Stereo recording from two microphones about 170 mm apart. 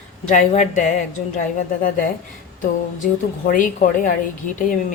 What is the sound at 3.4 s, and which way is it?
A woman's voice, 50° left (ahead or behind).